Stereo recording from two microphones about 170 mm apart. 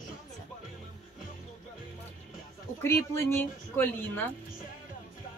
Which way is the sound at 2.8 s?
15° left (ahead or behind).